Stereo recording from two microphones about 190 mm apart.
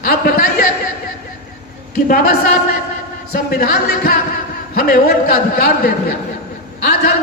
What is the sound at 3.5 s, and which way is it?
A man's voice, 55° left (ahead or behind).